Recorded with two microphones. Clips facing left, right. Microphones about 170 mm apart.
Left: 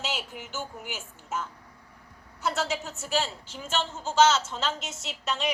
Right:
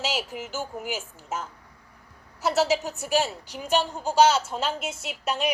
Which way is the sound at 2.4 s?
70° right (ahead or behind).